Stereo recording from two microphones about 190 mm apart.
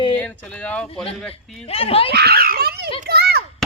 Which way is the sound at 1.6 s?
30° left (ahead or behind).